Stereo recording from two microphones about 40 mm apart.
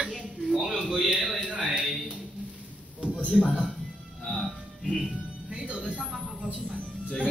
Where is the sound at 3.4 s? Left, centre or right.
Left.